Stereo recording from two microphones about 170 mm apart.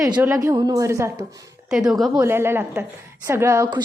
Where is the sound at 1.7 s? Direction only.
5° right (ahead or behind).